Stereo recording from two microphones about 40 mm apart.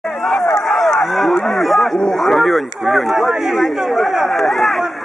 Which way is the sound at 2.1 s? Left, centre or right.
Centre.